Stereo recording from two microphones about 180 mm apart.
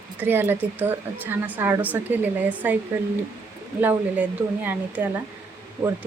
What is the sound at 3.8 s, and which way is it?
Speech, 10° right (ahead or behind).